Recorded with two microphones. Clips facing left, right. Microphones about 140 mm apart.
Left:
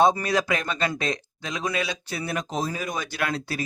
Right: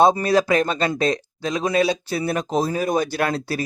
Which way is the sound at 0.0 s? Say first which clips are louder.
Right 4 dB; 35° right (ahead or behind).